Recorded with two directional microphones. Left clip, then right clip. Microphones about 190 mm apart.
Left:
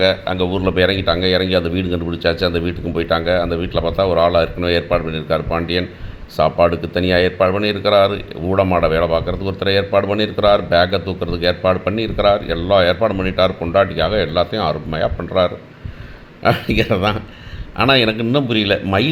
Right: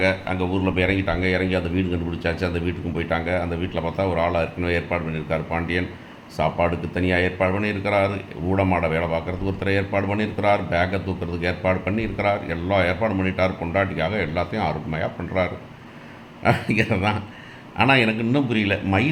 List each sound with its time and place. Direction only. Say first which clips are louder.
0.0 s speech: left 6 dB; 25° left (ahead or behind)